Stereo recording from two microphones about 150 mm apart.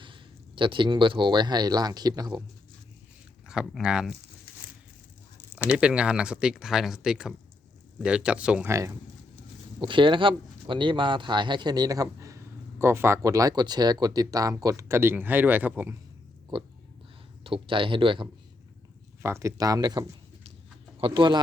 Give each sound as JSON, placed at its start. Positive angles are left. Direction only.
{"t": 0.0, "sound": "speech", "side_deg": -35}
{"t": 3.4, "sound": "speech", "side_deg": -5}
{"t": 5.6, "sound": "speech", "side_deg": -5}
{"t": 9.8, "sound": "speech", "side_deg": -35}
{"t": 17.4, "sound": "speech", "side_deg": -35}
{"t": 19.2, "sound": "speech", "side_deg": -20}